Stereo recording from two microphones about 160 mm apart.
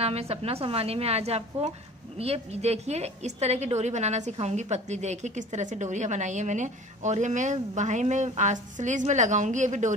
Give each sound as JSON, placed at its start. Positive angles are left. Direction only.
{"t": 0.0, "sound": "a woman's voice", "side_deg": -40}